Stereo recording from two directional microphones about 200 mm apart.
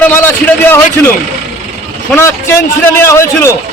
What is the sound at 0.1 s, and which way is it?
Speech, 10° left (ahead or behind).